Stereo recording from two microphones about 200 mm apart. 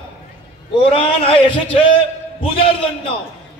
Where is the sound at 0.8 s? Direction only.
30° left (ahead or behind).